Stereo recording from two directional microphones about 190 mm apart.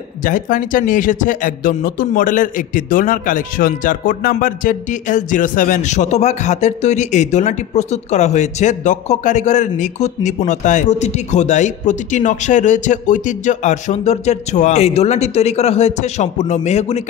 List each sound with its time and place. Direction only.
0.2 s a man's voice: 45° left (ahead or behind)